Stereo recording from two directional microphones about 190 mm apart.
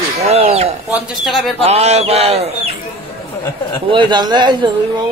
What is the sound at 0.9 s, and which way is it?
Speech, centre (ahead or behind).